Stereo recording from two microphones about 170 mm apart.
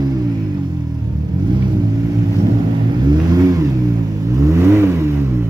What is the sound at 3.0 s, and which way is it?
Vehicle, 20° right (ahead or behind).